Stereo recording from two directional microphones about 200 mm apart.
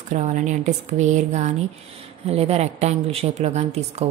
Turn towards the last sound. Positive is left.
turn(degrees=-35)  # may be behind; listen again after turning